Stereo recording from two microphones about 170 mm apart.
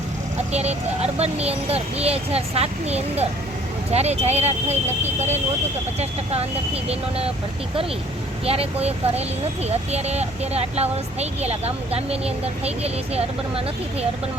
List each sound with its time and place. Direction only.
0.5 s speech: 40° right (ahead or behind)
8.4 s speech: 35° right (ahead or behind)